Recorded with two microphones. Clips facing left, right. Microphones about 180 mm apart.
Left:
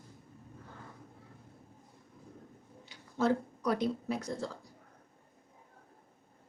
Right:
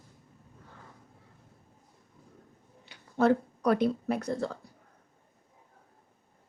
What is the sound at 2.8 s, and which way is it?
Speech, 60° right (ahead or behind).